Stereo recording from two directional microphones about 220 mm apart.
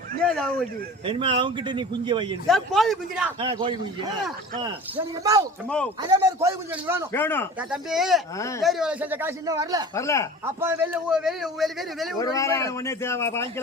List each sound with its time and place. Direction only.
0.2 s a man's voice: 5° left (ahead or behind)
1.0 s a man's voice: 25° right (ahead or behind)
2.5 s a man's voice: centre (ahead or behind)
3.4 s a man's voice: 20° right (ahead or behind)
5.6 s a man's voice: 5° left (ahead or behind)
6.0 s speech: 15° right (ahead or behind)
7.1 s a man's voice: 10° left (ahead or behind)
7.7 s a man's voice: centre (ahead or behind)
8.4 s a man's voice: 15° left (ahead or behind)
8.6 s speech: 5° right (ahead or behind)
9.9 s a man's voice: 15° left (ahead or behind)
10.4 s a man's voice: 10° right (ahead or behind)
12.2 s a man's voice: 15° left (ahead or behind)